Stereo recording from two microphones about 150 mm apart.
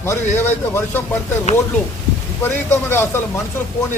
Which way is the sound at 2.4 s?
15° left (ahead or behind).